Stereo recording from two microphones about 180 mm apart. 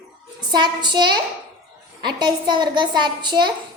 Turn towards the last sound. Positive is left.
turn(degrees=-25)  # may be behind; listen again after turning